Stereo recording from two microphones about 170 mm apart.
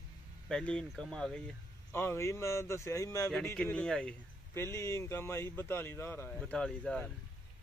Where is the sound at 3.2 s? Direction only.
5° left (ahead or behind).